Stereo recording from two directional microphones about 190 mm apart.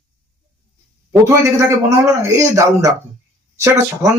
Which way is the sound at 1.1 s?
15° right (ahead or behind).